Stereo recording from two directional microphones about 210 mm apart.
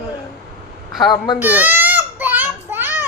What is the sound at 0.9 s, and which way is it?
Speech, 20° left (ahead or behind).